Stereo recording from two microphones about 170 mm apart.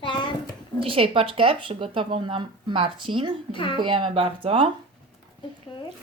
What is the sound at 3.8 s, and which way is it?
Speech, 30° right (ahead or behind).